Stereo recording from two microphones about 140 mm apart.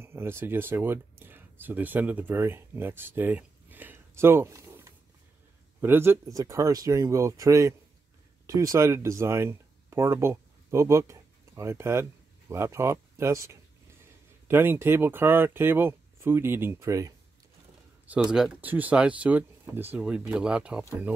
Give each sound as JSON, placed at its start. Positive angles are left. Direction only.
{"t": 0.0, "sound": "speech", "side_deg": -15}
{"t": 18.0, "sound": "speech", "side_deg": -5}